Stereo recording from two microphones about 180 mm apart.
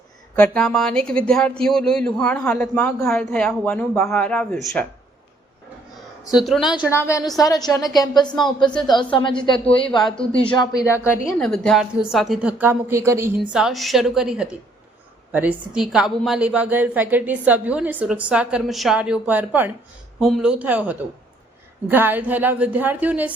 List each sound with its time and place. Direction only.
0.3 s a woman's voice: 5° left (ahead or behind)
6.3 s a woman's voice: centre (ahead or behind)
6.9 s a woman's voice: 15° left (ahead or behind)
11.3 s a woman's voice: 5° left (ahead or behind); by 13.3 s 15° right (ahead or behind)
13.5 s a woman's voice: 5° right (ahead or behind)